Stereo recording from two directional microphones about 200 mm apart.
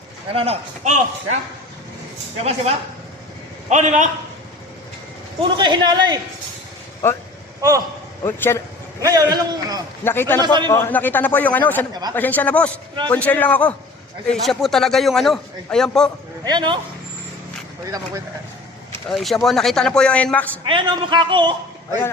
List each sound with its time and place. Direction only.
0.3 s a man's voice: 30° right (ahead or behind)
2.4 s a man's voice: 30° right (ahead or behind)
5.4 s a man's voice: 20° right (ahead or behind)
8.2 s a man's voice: 10° left (ahead or behind)
9.0 s a man's voice: 20° right (ahead or behind)
10.0 s a man's voice: 10° left (ahead or behind)
10.4 s a man's voice: 20° right (ahead or behind)
10.7 s a man's voice: 10° left (ahead or behind)
16.4 s a man's voice: 20° right (ahead or behind)
18.9 s a man's voice: centre (ahead or behind)
20.7 s a man's voice: 25° right (ahead or behind)